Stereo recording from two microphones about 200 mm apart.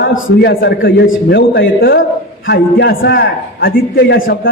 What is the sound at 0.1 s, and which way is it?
Speech, 55° left (ahead or behind).